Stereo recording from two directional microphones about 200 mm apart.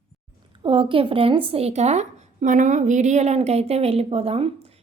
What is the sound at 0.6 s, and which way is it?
Speech, 25° right (ahead or behind).